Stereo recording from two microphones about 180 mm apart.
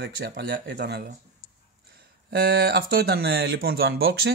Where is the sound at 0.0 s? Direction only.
65° right (ahead or behind).